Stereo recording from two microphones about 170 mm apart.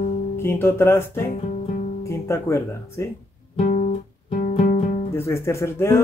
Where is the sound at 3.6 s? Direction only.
45° left (ahead or behind).